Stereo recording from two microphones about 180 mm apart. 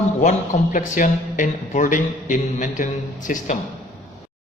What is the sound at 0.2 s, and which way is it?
Speech, 45° left (ahead or behind).